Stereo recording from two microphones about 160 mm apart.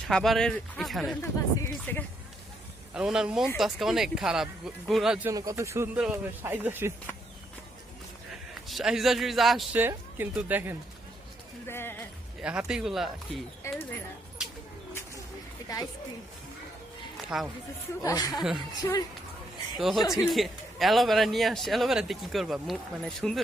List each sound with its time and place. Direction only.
0.1 s speech: 5° left (ahead or behind)
1.2 s speech: 15° left (ahead or behind)
2.9 s speech: 5° right (ahead or behind)
5.3 s speech: 20° right (ahead or behind)
8.6 s speech: centre (ahead or behind)
9.7 s speech: 10° right (ahead or behind)
11.6 s music: 15° left (ahead or behind)
12.4 s speech: 5° right (ahead or behind)
13.6 s speech: 15° left (ahead or behind)
17.2 s speech: 5° right (ahead or behind)
18.0 s speech: 25° left (ahead or behind)
18.3 s speech: centre (ahead or behind)
18.8 s speech: 25° left (ahead or behind)
20.2 s speech: centre (ahead or behind)